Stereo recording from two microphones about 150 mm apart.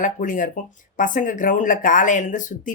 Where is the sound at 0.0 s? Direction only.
60° left (ahead or behind).